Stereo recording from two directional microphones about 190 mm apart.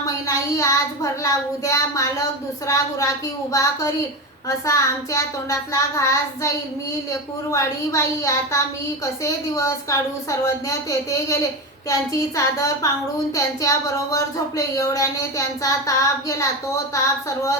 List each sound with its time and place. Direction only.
0.3 s speech: 15° left (ahead or behind)